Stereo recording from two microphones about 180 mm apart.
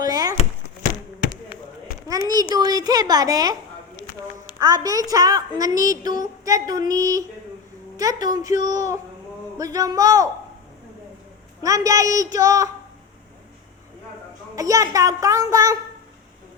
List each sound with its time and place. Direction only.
0.0 s a sound: 20° right (ahead or behind)
2.0 s a child's voice: 20° right (ahead or behind)
4.6 s a woman's voice: 20° right (ahead or behind)
9.6 s a woman's voice: 20° right (ahead or behind)
11.6 s a woman's voice: 20° right (ahead or behind)
14.5 s a woman's voice: 20° right (ahead or behind)